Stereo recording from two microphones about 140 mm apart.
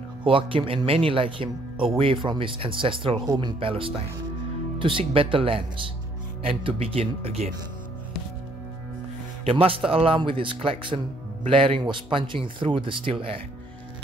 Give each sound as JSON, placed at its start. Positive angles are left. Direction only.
{"t": 0.2, "sound": "speech", "side_deg": -40}
{"t": 9.4, "sound": "speech", "side_deg": -45}